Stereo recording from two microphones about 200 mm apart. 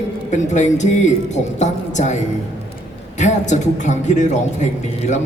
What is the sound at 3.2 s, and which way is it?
A woman's voice, 35° left (ahead or behind).